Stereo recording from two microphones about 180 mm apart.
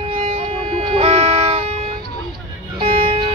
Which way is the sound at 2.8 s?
30° right (ahead or behind).